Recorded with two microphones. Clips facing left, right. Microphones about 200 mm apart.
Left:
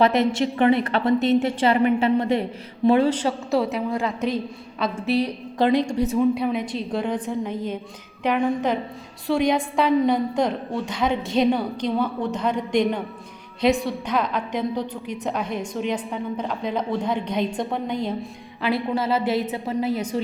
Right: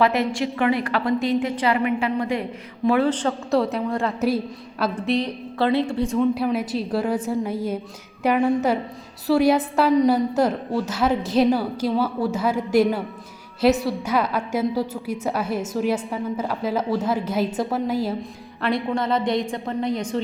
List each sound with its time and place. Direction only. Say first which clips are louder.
0.0 s a woman's voice: left 2 dB; 20° left (ahead or behind)
3.0 s a woman's voice: even; 10° left (ahead or behind)
5.0 s a woman's voice: left 4 dB; 10° left (ahead or behind)